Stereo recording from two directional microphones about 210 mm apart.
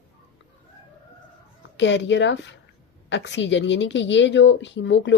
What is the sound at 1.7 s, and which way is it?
Speech, 60° left (ahead or behind).